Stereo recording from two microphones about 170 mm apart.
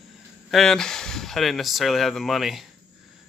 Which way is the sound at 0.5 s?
Centre (ahead or behind).